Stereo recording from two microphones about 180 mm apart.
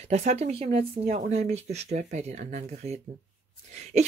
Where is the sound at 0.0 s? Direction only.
40° right (ahead or behind).